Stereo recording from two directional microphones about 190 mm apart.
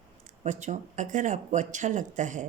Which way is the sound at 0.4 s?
40° right (ahead or behind).